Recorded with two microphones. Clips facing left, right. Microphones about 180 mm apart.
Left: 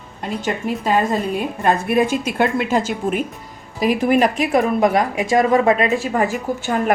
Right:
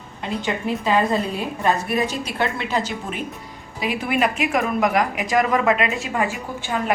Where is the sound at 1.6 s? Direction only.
50° left (ahead or behind).